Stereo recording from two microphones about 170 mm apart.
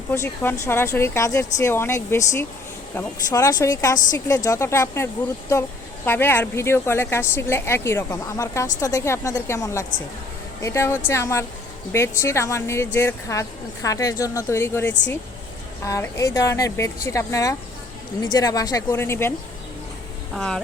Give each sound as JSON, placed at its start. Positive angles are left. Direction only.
{"t": 0.1, "sound": "speech", "side_deg": 15}
{"t": 6.1, "sound": "speech", "side_deg": 10}
{"t": 20.3, "sound": "speech", "side_deg": 5}